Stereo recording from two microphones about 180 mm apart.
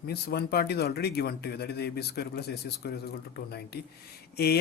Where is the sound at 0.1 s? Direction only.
65° left (ahead or behind).